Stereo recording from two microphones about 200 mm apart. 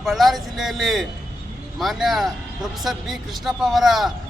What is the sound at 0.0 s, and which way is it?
Speech, centre (ahead or behind).